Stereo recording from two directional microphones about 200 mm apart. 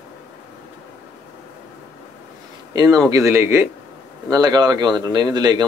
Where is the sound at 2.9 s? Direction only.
15° right (ahead or behind).